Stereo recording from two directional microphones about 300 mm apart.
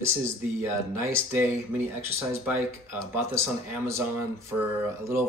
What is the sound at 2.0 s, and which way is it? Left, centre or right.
Speech, centre.